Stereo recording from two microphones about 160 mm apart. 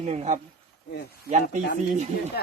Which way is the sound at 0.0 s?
45° right (ahead or behind).